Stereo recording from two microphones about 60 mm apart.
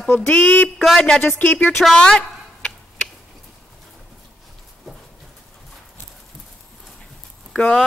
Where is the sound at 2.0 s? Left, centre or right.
Centre.